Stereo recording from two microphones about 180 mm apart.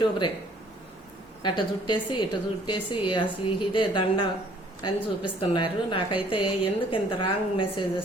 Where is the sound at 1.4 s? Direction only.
25° left (ahead or behind).